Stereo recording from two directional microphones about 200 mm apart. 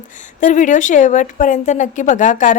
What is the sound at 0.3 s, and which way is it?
A woman's voice, 40° left (ahead or behind).